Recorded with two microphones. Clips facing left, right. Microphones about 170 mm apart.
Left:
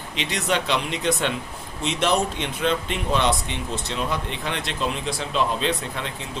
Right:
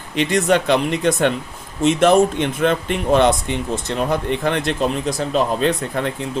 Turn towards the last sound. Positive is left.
turn(degrees=-50)  # may be behind; listen again after turning